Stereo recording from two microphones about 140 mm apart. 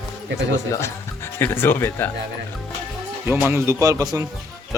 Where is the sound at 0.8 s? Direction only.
20° left (ahead or behind).